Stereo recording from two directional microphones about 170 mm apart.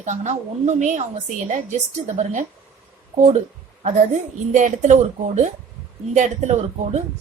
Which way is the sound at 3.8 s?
45° right (ahead or behind).